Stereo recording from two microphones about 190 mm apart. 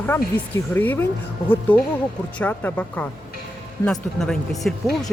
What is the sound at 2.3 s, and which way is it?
Speech, 10° left (ahead or behind).